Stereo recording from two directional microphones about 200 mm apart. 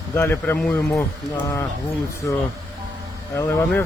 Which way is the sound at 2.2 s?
10° left (ahead or behind).